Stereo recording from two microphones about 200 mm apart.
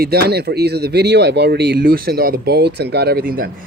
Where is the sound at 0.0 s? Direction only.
50° right (ahead or behind).